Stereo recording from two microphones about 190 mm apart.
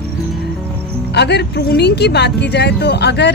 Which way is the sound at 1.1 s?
60° left (ahead or behind).